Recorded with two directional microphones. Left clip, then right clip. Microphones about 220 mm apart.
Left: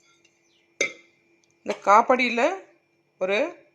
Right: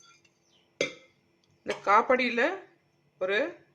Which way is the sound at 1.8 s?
20° left (ahead or behind).